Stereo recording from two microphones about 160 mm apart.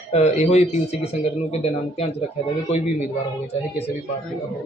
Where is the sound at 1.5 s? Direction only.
40° left (ahead or behind).